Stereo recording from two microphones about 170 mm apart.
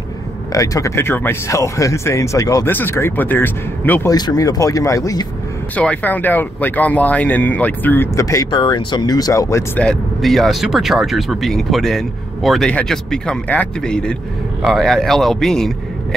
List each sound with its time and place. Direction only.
0.5 s speech: 20° left (ahead or behind)
4.1 s speech: 20° left (ahead or behind)
5.8 s speech: 10° left (ahead or behind)
9.8 s speech: centre (ahead or behind)